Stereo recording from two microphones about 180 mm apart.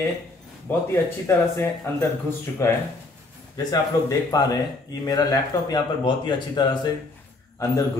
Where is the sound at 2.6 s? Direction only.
15° left (ahead or behind).